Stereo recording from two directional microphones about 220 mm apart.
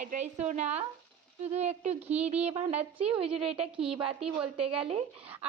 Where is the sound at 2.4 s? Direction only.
30° right (ahead or behind).